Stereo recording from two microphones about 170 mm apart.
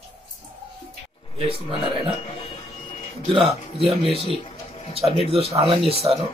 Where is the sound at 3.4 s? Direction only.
Centre (ahead or behind).